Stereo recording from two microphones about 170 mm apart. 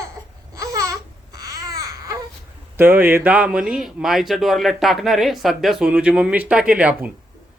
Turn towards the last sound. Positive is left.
turn(degrees=-5)  # may be behind; listen again after turning